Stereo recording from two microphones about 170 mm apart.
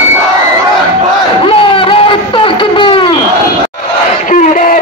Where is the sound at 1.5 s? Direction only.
30° left (ahead or behind).